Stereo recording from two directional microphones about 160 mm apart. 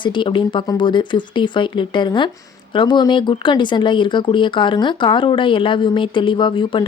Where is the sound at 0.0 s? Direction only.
30° left (ahead or behind).